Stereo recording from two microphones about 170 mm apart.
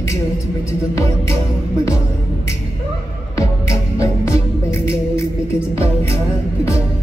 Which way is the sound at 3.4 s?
15° left (ahead or behind).